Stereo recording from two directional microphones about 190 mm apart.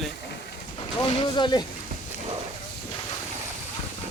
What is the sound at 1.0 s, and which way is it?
Speech, 25° left (ahead or behind).